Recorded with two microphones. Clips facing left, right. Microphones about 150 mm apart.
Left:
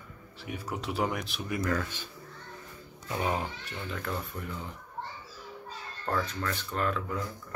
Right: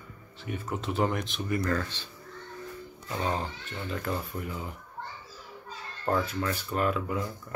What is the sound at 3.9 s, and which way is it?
Speech, 5° right (ahead or behind).